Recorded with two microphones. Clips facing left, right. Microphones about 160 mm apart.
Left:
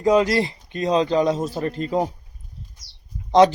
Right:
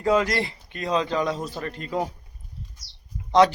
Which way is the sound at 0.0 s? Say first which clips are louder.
Left 4 dB; 20° left (ahead or behind).